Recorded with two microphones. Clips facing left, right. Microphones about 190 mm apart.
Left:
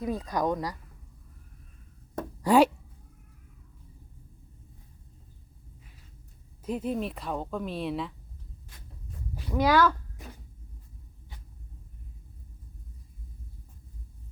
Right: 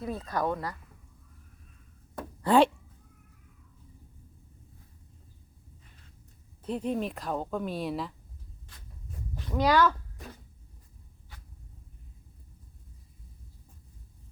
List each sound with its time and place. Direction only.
0.0 s speech: 15° left (ahead or behind)
2.4 s speech: 10° left (ahead or behind)
6.7 s speech: 5° left (ahead or behind)
9.3 s a sound: 10° left (ahead or behind)